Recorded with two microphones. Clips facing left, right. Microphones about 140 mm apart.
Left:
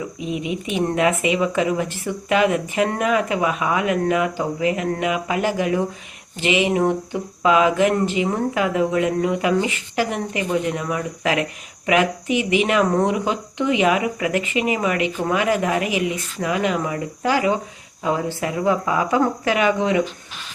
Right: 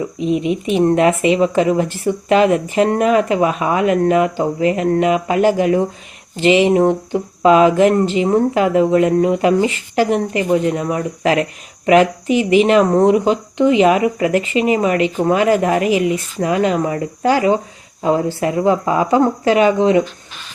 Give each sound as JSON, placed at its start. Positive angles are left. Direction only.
{"t": 0.2, "sound": "speech", "side_deg": -30}